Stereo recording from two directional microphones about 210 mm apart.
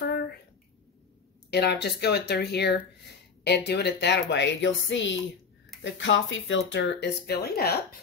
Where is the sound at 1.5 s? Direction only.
50° left (ahead or behind).